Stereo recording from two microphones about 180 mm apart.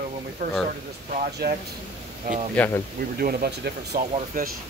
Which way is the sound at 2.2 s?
45° right (ahead or behind).